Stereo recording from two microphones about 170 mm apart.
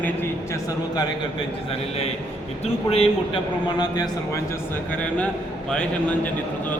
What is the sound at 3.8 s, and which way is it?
Speech, 25° left (ahead or behind).